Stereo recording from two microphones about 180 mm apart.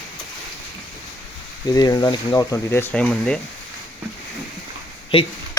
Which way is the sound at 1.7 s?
20° left (ahead or behind).